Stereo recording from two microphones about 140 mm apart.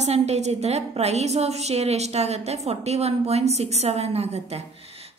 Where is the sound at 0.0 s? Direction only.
50° right (ahead or behind).